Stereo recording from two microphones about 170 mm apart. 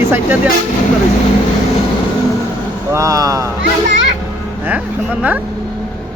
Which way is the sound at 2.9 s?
20° right (ahead or behind).